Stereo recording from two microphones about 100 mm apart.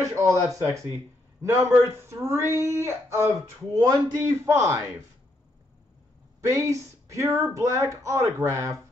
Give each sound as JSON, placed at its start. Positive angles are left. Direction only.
{"t": 0.0, "sound": "speech", "side_deg": -30}
{"t": 6.4, "sound": "speech", "side_deg": -30}